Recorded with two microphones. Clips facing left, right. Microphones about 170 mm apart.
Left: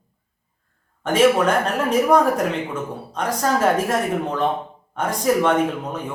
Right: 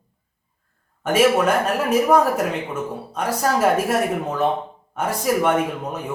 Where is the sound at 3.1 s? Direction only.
10° right (ahead or behind).